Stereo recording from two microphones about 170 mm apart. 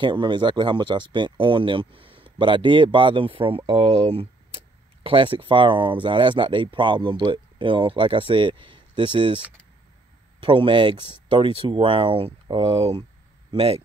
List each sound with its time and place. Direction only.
0.0 s speech: 25° right (ahead or behind)
10.4 s speech: 30° right (ahead or behind)